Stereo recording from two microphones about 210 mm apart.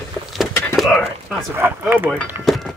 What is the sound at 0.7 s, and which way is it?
Whispering, centre (ahead or behind).